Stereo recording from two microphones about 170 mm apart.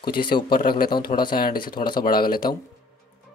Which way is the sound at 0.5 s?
60° left (ahead or behind).